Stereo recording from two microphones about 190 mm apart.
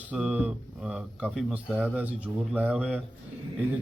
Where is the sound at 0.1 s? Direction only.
5° right (ahead or behind).